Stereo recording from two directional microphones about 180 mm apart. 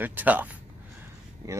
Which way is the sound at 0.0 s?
10° right (ahead or behind).